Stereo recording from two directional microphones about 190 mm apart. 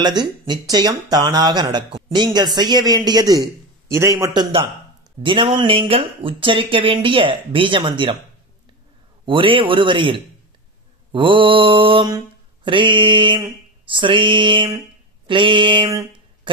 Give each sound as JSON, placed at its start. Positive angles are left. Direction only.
{"t": 0.5, "sound": "speech", "side_deg": -20}
{"t": 9.2, "sound": "speech", "side_deg": -25}
{"t": 11.1, "sound": "mantra", "side_deg": -25}
{"t": 12.6, "sound": "speech", "side_deg": -25}